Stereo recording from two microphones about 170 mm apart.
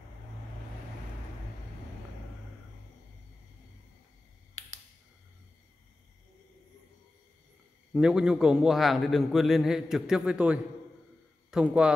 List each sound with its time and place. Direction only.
7.9 s a man's voice: 5° right (ahead or behind)